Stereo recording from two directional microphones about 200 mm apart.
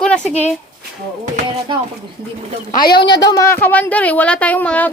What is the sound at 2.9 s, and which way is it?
A woman's voice, 20° left (ahead or behind).